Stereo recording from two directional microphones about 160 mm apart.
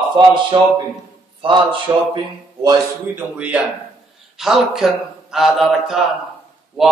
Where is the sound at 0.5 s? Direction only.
30° right (ahead or behind).